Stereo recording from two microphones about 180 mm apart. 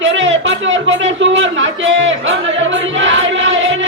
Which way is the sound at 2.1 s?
90° right.